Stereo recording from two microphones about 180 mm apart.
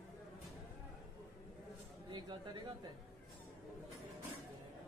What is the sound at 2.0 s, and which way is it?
Speech, 25° right (ahead or behind).